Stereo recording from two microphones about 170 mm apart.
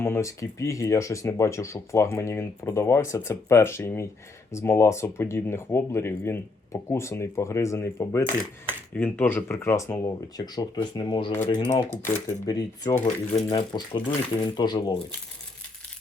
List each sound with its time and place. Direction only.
0.0 s speech: 15° left (ahead or behind)
13.0 s speech: 35° left (ahead or behind)